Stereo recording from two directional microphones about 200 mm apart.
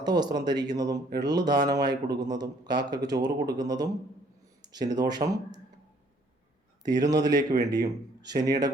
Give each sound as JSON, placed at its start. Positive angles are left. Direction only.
{"t": 0.0, "sound": "speech", "side_deg": -20}
{"t": 6.8, "sound": "speech", "side_deg": -20}